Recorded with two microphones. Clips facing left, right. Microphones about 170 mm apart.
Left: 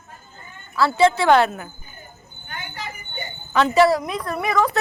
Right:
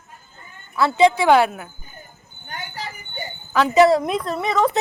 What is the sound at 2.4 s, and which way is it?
Vehicle, 35° right (ahead or behind).